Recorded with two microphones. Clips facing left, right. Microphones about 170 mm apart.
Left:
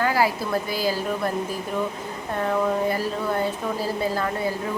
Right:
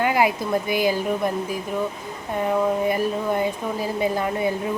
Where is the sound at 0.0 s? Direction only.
20° right (ahead or behind).